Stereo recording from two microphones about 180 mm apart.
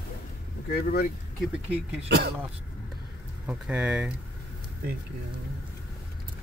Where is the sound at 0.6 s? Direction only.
55° left (ahead or behind).